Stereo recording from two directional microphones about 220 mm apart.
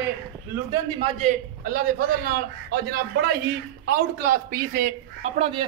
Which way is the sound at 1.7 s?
40° right (ahead or behind).